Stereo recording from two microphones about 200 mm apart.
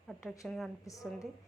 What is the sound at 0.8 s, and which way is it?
Speech, 15° left (ahead or behind).